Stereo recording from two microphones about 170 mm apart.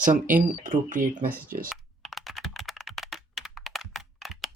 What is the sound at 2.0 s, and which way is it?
Computer keyboard, centre (ahead or behind).